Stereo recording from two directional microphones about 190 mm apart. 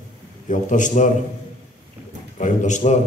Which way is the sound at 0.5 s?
40° left (ahead or behind).